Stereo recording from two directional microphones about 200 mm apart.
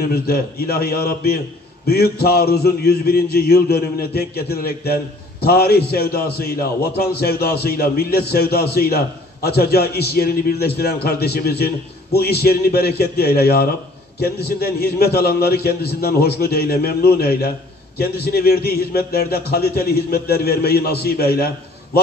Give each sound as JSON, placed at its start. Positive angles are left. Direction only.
{"t": 0.1, "sound": "a man's voice", "side_deg": 50}